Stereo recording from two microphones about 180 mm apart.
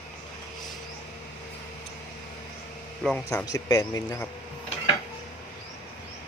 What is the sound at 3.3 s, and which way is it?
Speech, 20° left (ahead or behind).